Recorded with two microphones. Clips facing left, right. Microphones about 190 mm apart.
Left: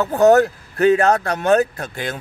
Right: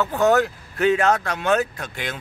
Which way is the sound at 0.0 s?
40° left (ahead or behind).